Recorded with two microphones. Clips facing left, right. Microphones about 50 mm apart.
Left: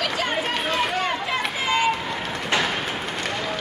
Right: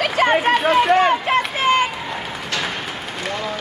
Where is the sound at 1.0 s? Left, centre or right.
Right.